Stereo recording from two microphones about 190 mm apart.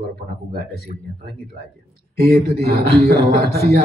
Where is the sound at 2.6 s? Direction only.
55° right (ahead or behind).